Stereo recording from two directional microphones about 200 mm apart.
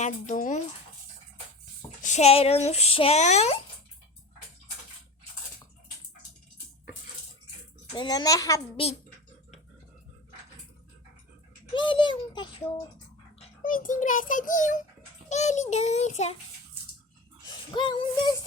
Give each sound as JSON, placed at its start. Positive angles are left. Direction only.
{"t": 0.0, "sound": "speech", "side_deg": 40}
{"t": 2.0, "sound": "speech", "side_deg": 35}
{"t": 7.9, "sound": "a child's voice", "side_deg": 20}
{"t": 11.7, "sound": "a child's voice", "side_deg": 25}
{"t": 13.6, "sound": "speech", "side_deg": 40}
{"t": 17.4, "sound": "speech", "side_deg": 20}